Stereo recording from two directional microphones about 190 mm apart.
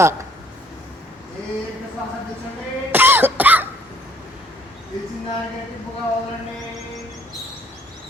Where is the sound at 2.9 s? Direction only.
10° right (ahead or behind).